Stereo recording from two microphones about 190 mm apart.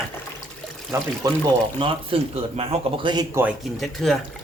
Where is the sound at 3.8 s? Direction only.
Centre (ahead or behind).